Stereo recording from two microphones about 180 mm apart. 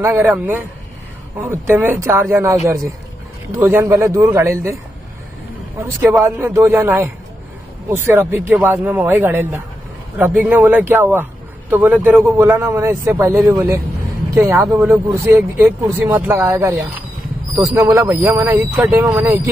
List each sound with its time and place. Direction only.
0.0 s speech: 10° right (ahead or behind)
1.4 s speech: 15° right (ahead or behind)
5.8 s speech: 15° right (ahead or behind)